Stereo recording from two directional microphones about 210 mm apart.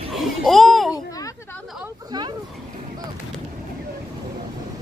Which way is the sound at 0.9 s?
15° left (ahead or behind).